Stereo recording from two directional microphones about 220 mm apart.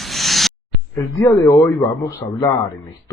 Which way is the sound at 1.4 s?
15° left (ahead or behind).